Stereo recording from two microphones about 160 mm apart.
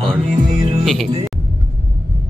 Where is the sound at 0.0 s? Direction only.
Centre (ahead or behind).